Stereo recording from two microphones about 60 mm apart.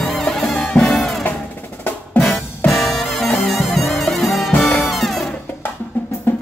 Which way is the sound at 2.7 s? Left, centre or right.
Centre.